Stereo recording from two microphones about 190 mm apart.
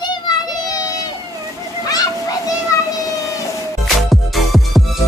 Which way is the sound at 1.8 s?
20° left (ahead or behind).